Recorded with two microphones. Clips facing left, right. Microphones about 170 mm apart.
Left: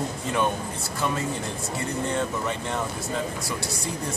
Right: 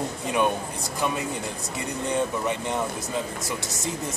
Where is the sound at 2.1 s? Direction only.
15° right (ahead or behind).